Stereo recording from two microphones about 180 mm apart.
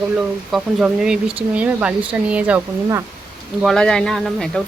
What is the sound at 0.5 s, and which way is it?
Speech, 5° right (ahead or behind).